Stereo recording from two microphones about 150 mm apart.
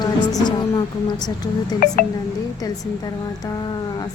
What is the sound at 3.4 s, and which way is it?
Speech, 30° left (ahead or behind).